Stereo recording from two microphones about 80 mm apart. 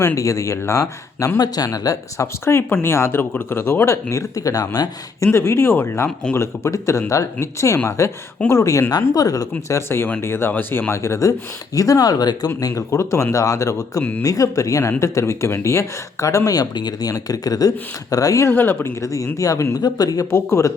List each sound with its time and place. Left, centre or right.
0.0 s speech: left
5.2 s speech: left
8.9 s speech: left
12.5 s speech: left
18.5 s speech: left
19.0 s speech: left
20.3 s speech: left